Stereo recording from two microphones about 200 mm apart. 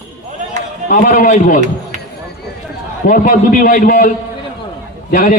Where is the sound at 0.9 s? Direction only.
45° left (ahead or behind).